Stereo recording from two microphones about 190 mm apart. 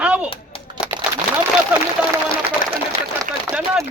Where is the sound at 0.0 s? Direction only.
5° right (ahead or behind).